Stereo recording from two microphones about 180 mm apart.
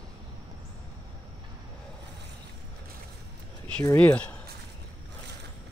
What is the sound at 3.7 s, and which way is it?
Speech, 10° left (ahead or behind).